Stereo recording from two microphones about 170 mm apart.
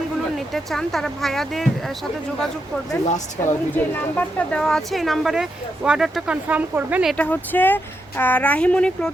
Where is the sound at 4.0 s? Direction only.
10° left (ahead or behind); by 7.1 s 10° right (ahead or behind).